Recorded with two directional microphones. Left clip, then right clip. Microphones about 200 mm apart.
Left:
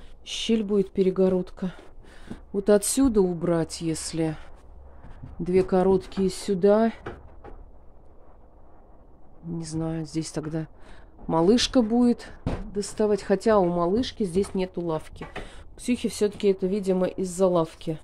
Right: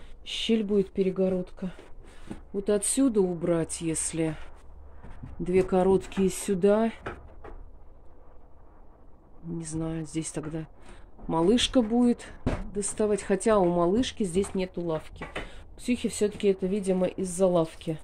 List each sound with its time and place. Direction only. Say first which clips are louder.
0.2 s speech: left 1 dB; 10° left (ahead or behind)
5.4 s speech: left 2 dB; 10° left (ahead or behind)
9.6 s speech: left 3 dB; 10° left (ahead or behind)